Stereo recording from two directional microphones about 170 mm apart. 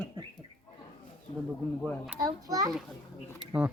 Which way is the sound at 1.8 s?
5° right (ahead or behind).